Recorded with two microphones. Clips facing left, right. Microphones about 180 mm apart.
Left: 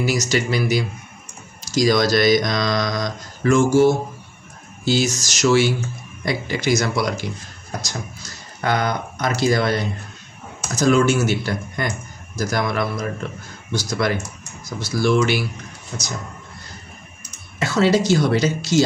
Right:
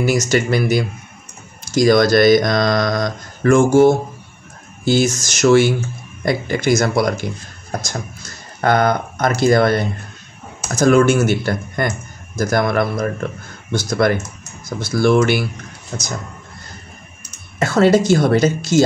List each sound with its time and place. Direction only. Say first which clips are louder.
0.0 s speech: right 4 dB; 50° right (ahead or behind)
17.6 s speech: right 4 dB; 50° right (ahead or behind)